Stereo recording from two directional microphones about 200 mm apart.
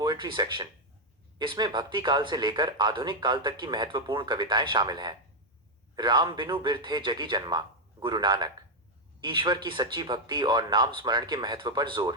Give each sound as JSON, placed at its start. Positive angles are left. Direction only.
{"t": 0.0, "sound": "speech", "side_deg": -20}